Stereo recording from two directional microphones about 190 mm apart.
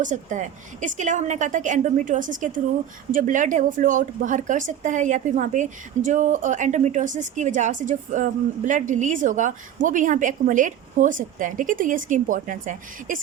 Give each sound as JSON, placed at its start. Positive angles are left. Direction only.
{"t": 0.0, "sound": "speech", "side_deg": -40}